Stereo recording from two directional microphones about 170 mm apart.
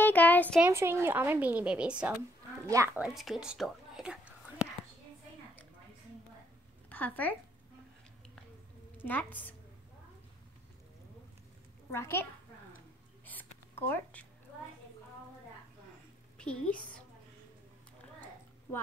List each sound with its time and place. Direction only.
0.0 s a sound: 10° left (ahead or behind)
0.7 s a woman's voice: 15° right (ahead or behind)
2.6 s a woman's voice: 15° right (ahead or behind)
3.0 s speech: centre (ahead or behind)
6.9 s speech: 10° left (ahead or behind)
8.9 s a woman's voice: 10° left (ahead or behind)
11.9 s a woman's voice: 15° left (ahead or behind)
13.2 s a sound: 10° left (ahead or behind)
16.3 s a woman's voice: 5° left (ahead or behind)